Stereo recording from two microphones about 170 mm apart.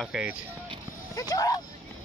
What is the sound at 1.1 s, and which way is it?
Speech, 20° left (ahead or behind).